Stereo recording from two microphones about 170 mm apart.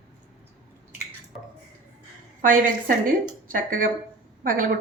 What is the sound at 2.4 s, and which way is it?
Speech, 55° right (ahead or behind).